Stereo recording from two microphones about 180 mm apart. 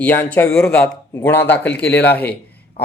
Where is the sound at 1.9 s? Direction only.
70° left (ahead or behind).